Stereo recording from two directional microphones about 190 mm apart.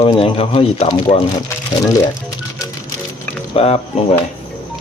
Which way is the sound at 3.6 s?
30° left (ahead or behind).